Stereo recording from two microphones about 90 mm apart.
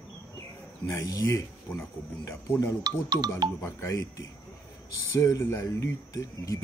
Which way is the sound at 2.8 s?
50° right (ahead or behind).